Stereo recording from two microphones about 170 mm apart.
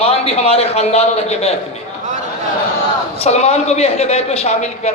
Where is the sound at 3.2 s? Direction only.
40° left (ahead or behind).